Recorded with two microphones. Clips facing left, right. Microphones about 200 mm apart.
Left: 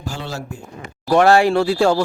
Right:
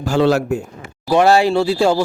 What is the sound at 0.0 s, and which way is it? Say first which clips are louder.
Speech: right 14 dB; 70° right (ahead or behind).